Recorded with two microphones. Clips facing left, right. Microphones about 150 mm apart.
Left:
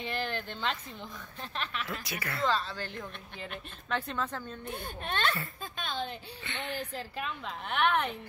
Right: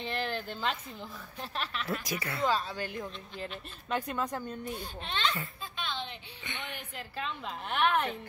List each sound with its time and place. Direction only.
0.0 s speech: centre (ahead or behind)
1.9 s speech: 35° right (ahead or behind)
2.2 s speech: 15° right (ahead or behind)
4.6 s a child's voice: 50° left (ahead or behind)
5.8 s a sound: 45° left (ahead or behind)
6.4 s speech: 15° right (ahead or behind)
6.7 s a woman's voice: 35° left (ahead or behind)
7.4 s speech: centre (ahead or behind)